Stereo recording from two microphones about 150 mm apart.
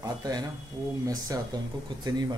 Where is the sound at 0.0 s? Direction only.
25° right (ahead or behind).